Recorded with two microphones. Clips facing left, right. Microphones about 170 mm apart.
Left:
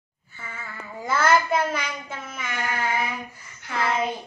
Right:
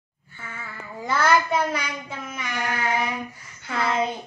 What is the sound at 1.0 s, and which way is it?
Child singing, 5° left (ahead or behind).